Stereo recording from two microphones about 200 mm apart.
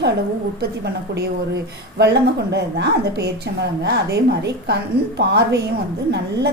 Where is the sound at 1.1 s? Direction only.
55° right (ahead or behind).